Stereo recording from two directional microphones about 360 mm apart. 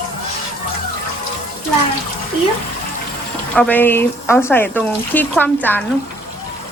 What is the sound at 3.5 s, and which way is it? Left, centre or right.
Speech, centre.